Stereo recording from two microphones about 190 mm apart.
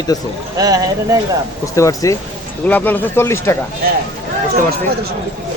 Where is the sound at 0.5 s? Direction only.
20° right (ahead or behind).